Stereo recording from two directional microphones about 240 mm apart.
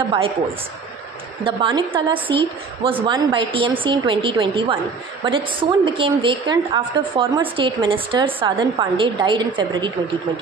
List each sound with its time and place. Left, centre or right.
0.0 s a woman's voice: right
1.4 s a woman's voice: right